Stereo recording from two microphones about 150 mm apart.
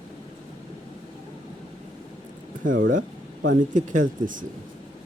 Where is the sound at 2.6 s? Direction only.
60° right (ahead or behind).